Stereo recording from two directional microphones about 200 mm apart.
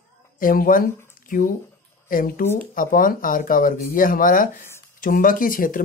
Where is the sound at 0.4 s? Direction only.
45° left (ahead or behind).